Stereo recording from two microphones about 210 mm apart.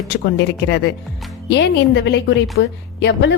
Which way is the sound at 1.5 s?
55° left (ahead or behind).